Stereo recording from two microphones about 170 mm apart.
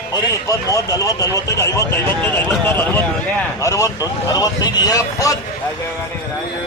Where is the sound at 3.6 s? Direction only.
20° left (ahead or behind).